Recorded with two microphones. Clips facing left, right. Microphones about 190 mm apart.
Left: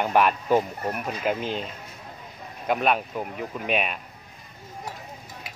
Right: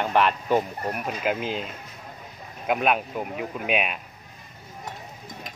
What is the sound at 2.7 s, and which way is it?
Speech, 5° right (ahead or behind).